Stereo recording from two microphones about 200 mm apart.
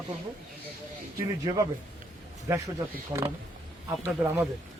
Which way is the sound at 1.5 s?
20° right (ahead or behind).